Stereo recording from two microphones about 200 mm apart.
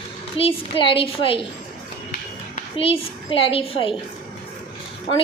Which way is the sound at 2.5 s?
30° left (ahead or behind).